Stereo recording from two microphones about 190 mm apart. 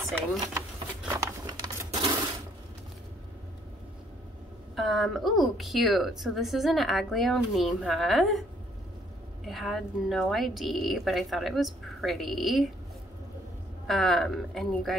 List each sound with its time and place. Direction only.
0.4 s sewing machine: 15° right (ahead or behind)
4.7 s a woman's voice: centre (ahead or behind)
9.5 s a woman's voice: centre (ahead or behind)
13.8 s a woman's voice: centre (ahead or behind)